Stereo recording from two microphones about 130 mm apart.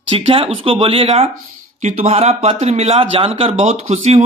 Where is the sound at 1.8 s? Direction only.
65° right (ahead or behind).